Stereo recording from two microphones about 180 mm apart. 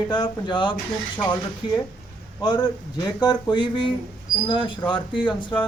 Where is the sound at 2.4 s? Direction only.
25° left (ahead or behind).